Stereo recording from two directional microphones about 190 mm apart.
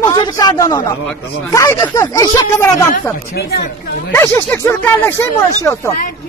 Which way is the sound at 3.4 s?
55° left (ahead or behind).